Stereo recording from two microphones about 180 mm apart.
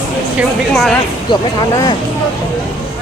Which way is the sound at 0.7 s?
Centre (ahead or behind).